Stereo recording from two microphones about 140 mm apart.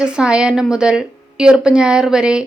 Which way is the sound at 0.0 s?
5° right (ahead or behind).